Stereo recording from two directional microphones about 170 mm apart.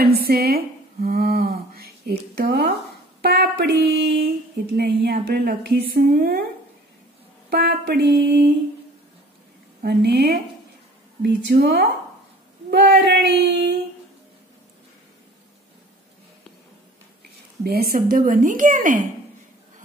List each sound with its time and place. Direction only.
0.0 s a sound: 65° right (ahead or behind)
2.3 s speech: 70° right (ahead or behind)
7.4 s speech: 70° right (ahead or behind)
9.8 s speech: 70° right (ahead or behind)
12.7 s speech: 70° right (ahead or behind)
17.6 s speech: 65° right (ahead or behind)